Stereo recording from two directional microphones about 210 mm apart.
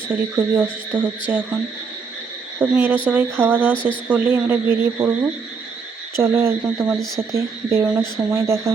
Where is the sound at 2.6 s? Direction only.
10° right (ahead or behind).